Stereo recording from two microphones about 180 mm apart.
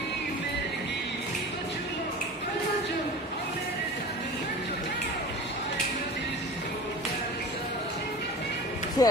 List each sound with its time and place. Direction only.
9.0 s speech: 20° left (ahead or behind)